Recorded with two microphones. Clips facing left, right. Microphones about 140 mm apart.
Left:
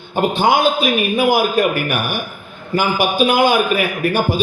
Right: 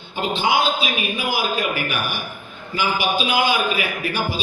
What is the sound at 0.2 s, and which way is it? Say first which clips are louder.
A man's voice: left 6 dB; 50° left (ahead or behind).